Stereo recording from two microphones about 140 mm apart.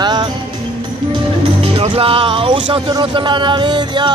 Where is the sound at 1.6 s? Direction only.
45° right (ahead or behind).